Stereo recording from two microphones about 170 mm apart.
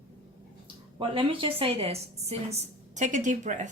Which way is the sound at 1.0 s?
30° right (ahead or behind).